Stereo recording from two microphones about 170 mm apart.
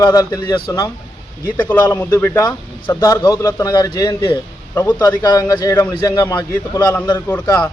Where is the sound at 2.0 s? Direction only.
15° left (ahead or behind).